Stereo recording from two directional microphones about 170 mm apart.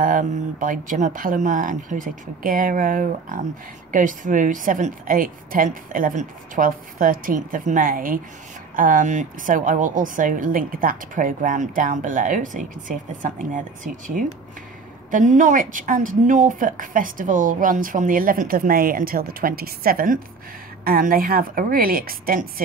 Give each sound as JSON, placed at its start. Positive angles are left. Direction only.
{"t": 0.0, "sound": "a woman's voice", "side_deg": -50}